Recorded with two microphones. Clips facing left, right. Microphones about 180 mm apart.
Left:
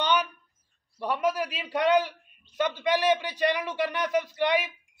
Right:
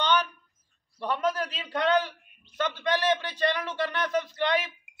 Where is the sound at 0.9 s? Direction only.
10° left (ahead or behind).